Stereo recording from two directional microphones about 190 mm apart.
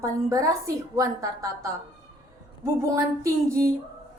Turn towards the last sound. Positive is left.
turn(degrees=-15)  # may be behind; listen again after turning